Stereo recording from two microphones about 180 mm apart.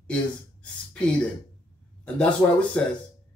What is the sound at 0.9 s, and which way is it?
Speech, 5° left (ahead or behind).